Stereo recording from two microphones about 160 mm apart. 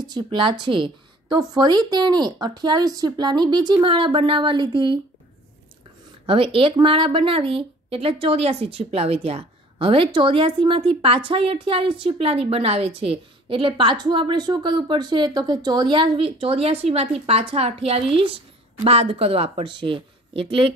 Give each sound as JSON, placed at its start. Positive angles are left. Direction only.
{"t": 0.0, "sound": "a woman's voice", "side_deg": -30}
{"t": 6.2, "sound": "speech", "side_deg": -35}